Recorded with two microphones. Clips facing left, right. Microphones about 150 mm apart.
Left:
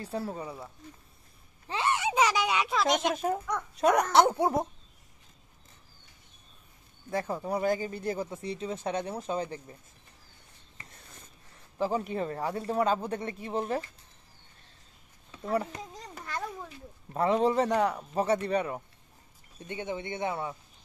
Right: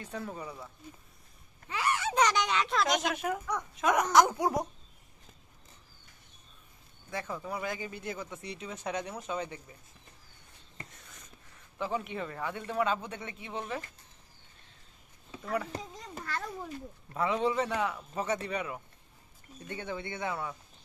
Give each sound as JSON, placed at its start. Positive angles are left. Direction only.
{"t": 0.0, "sound": "speech", "side_deg": 35}
{"t": 1.7, "sound": "a sound", "side_deg": 25}
{"t": 2.1, "sound": "a child's voice", "side_deg": 5}
{"t": 3.2, "sound": "speech", "side_deg": 35}
{"t": 7.1, "sound": "speech", "side_deg": 35}
{"t": 11.8, "sound": "speech", "side_deg": 35}
{"t": 15.4, "sound": "speech", "side_deg": 35}
{"t": 17.1, "sound": "speech", "side_deg": 40}
{"t": 19.7, "sound": "speech", "side_deg": 20}